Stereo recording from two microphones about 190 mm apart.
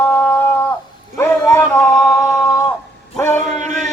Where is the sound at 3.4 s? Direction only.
40° right (ahead or behind).